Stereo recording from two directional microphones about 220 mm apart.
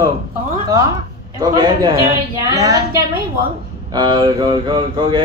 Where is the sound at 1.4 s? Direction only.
20° right (ahead or behind).